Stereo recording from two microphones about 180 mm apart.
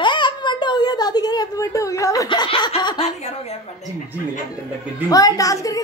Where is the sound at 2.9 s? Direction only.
35° left (ahead or behind).